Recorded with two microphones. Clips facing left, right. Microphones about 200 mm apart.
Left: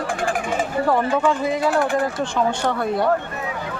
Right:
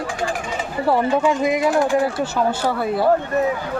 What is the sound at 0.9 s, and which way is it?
Speech, 15° right (ahead or behind).